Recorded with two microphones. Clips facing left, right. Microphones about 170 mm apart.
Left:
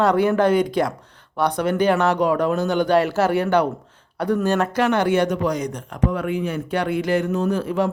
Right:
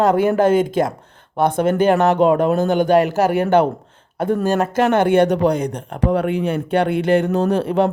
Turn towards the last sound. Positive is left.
turn(degrees=-65)  # may be behind; listen again after turning